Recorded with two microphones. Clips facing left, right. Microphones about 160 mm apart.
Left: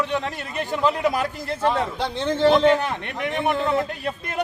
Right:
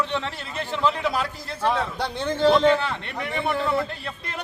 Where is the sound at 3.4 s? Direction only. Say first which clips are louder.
Left 2 dB; 15° left (ahead or behind).